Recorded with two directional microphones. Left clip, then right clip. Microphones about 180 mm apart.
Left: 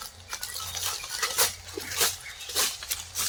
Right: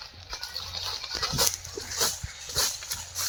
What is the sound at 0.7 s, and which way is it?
Dog, 15° left (ahead or behind).